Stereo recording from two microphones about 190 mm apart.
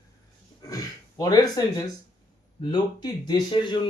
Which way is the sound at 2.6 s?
20° left (ahead or behind).